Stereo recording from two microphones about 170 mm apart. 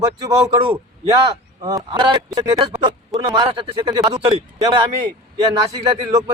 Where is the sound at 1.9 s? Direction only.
30° right (ahead or behind).